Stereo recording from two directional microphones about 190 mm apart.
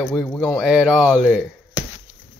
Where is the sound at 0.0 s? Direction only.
10° left (ahead or behind).